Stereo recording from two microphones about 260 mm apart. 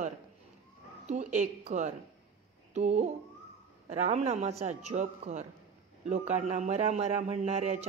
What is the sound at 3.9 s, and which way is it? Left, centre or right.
A woman's voice, right.